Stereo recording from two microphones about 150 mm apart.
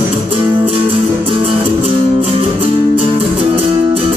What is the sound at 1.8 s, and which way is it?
Music, 40° right (ahead or behind).